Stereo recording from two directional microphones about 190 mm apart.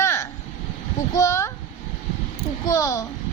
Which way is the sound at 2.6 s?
15° left (ahead or behind).